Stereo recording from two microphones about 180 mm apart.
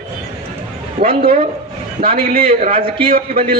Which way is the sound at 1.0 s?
50° right (ahead or behind).